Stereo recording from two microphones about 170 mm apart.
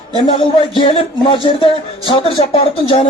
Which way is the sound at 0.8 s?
30° left (ahead or behind).